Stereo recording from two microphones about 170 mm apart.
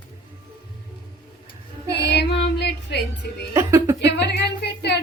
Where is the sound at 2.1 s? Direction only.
80° left.